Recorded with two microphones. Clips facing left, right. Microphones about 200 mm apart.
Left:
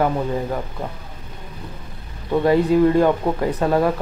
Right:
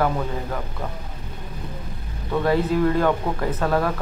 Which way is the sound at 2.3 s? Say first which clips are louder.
Left 5 dB; 15° left (ahead or behind).